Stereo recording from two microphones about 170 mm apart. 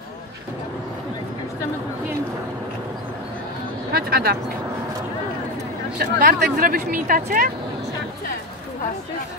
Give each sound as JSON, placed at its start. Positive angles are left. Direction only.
{"t": 3.9, "sound": "speech", "side_deg": -65}
{"t": 5.9, "sound": "speech", "side_deg": -60}